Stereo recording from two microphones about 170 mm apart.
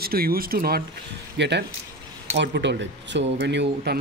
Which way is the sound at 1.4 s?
90° right.